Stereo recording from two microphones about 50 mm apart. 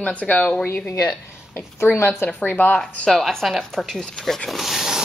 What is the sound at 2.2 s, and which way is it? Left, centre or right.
Speech, left.